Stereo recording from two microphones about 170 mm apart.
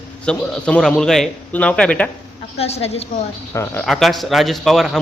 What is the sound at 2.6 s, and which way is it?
Speech, 35° left (ahead or behind).